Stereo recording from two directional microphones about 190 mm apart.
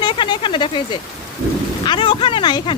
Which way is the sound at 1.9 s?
25° left (ahead or behind).